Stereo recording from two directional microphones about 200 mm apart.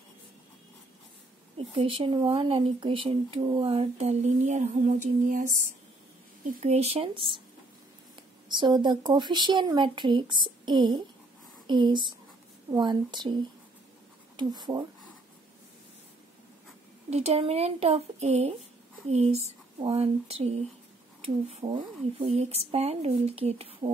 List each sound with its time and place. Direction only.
1.7 s speech: 30° right (ahead or behind)
6.6 s speech: 30° right (ahead or behind)
8.5 s speech: 20° right (ahead or behind)
14.3 s speech: 20° right (ahead or behind)
17.1 s speech: 30° right (ahead or behind)